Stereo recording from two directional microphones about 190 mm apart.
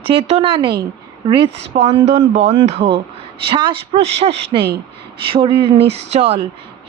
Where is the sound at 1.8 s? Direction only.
35° right (ahead or behind).